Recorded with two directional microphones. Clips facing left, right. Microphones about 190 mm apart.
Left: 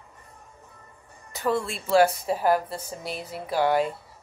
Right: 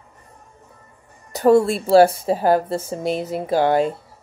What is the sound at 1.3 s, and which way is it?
Speech, 40° right (ahead or behind).